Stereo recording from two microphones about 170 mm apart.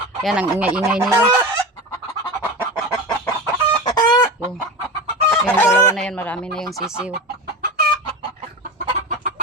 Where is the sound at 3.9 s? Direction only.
25° left (ahead or behind).